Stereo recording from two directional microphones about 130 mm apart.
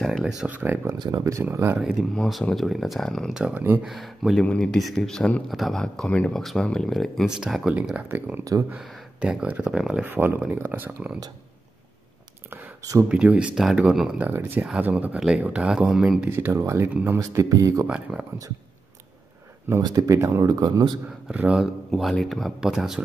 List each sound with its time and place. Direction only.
0.0 s a sound: centre (ahead or behind)
0.4 s speech: 10° right (ahead or behind)
0.9 s speech: 30° right (ahead or behind)
1.8 s speech: 5° right (ahead or behind)
13.1 s speech: 10° right (ahead or behind)
16.3 s speech: 20° right (ahead or behind)
17.8 s speech: 10° right (ahead or behind)
19.8 s speech: 30° right (ahead or behind)
21.3 s speech: 10° right (ahead or behind)